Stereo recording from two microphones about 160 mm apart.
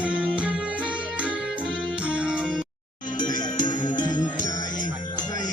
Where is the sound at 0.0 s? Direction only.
5° right (ahead or behind).